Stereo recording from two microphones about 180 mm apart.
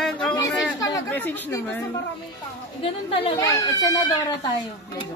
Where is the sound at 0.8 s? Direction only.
15° left (ahead or behind).